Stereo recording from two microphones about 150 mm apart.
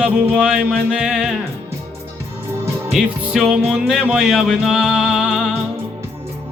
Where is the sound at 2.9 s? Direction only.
Centre (ahead or behind).